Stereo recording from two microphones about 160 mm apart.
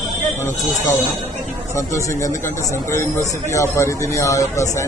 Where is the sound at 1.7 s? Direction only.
20° left (ahead or behind).